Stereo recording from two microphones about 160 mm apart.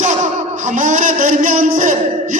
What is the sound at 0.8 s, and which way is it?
A man's voice, 55° right (ahead or behind).